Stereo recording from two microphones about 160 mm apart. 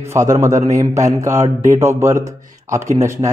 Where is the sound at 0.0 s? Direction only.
20° right (ahead or behind).